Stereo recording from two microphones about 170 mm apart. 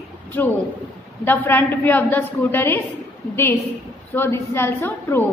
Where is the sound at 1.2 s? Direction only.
10° left (ahead or behind).